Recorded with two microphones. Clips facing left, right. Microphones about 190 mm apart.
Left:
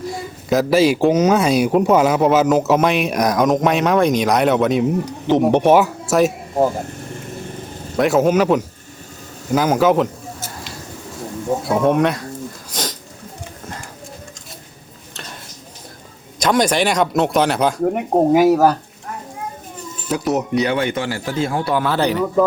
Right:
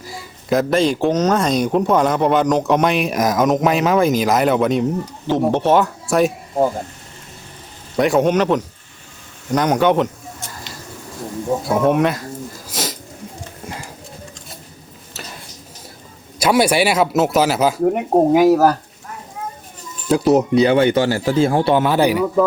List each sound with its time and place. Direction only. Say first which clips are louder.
0.5 s speech: left 2 dB; 5° left (ahead or behind)
5.2 s speech: left 3 dB; 15° left (ahead or behind); by 6.7 s centre (ahead or behind)
7.9 s speech: even; centre (ahead or behind)
9.5 s a sound: left 1 dB; 5° left (ahead or behind)
11.6 s speech: even; centre (ahead or behind)
12.7 s a sound: right 2 dB; 5° right (ahead or behind)
15.1 s a sound: right 1 dB; 5° right (ahead or behind)
16.4 s speech: right 1 dB; 10° right (ahead or behind)
20.1 s speech: right 6 dB; 30° right (ahead or behind); by 22.3 s 10° right (ahead or behind)